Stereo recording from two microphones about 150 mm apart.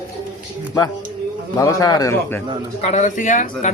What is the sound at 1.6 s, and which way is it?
Speech, 25° left (ahead or behind).